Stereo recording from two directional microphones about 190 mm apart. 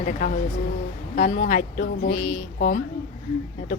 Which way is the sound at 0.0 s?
45° left (ahead or behind).